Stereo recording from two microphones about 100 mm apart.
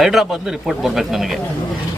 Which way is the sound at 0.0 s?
Centre (ahead or behind).